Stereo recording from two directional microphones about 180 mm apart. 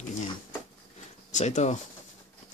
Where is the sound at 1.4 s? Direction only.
40° left (ahead or behind).